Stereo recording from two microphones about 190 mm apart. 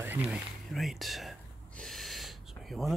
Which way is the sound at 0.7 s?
Centre (ahead or behind).